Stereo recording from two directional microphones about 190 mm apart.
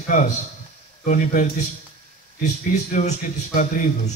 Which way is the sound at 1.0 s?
40° left (ahead or behind).